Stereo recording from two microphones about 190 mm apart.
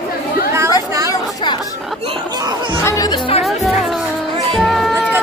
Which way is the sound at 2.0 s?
25° right (ahead or behind).